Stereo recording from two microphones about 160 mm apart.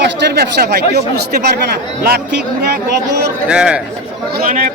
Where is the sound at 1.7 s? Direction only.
75° right (ahead or behind).